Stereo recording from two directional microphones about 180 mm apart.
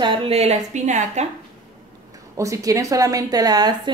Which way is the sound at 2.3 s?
15° right (ahead or behind).